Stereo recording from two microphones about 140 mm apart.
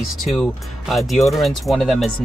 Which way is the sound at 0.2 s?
Centre (ahead or behind).